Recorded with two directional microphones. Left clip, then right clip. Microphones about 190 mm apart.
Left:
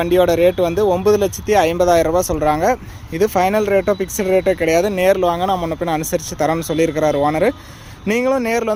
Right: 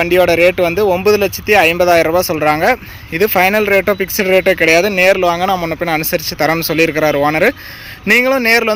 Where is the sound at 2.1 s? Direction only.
15° right (ahead or behind).